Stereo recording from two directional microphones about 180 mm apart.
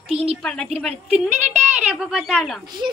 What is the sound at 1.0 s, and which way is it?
Speech, 35° right (ahead or behind).